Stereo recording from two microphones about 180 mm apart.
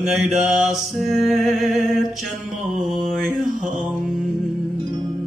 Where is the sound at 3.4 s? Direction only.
45° right (ahead or behind).